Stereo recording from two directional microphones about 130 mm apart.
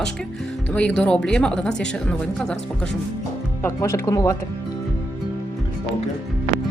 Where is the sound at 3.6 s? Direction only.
20° left (ahead or behind).